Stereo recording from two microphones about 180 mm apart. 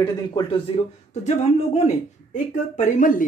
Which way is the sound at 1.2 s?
40° left (ahead or behind).